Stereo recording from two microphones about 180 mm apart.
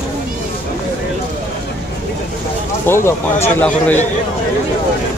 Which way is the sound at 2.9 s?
15° left (ahead or behind).